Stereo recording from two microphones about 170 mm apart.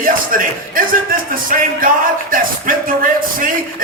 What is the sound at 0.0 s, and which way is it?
Speech, 55° right (ahead or behind).